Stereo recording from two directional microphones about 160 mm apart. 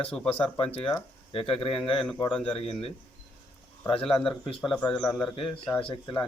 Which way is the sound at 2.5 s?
35° left (ahead or behind).